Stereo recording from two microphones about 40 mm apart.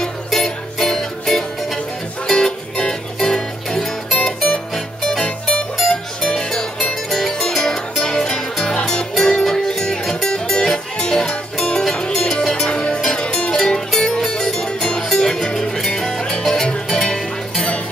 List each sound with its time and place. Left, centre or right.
0.0 s music: centre
5.2 s music: left
6.3 s music: centre
12.6 s music: left